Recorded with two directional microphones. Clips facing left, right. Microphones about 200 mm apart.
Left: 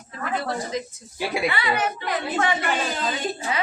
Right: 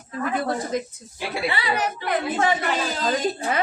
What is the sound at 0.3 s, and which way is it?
Speech, 50° right (ahead or behind).